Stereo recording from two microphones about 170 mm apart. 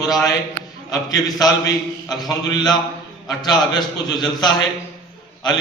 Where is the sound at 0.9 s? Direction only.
20° left (ahead or behind).